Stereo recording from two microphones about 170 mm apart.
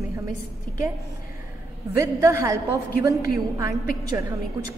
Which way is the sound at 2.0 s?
15° right (ahead or behind).